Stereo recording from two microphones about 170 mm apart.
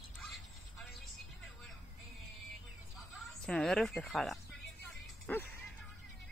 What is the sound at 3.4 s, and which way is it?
Speech, 5° left (ahead or behind).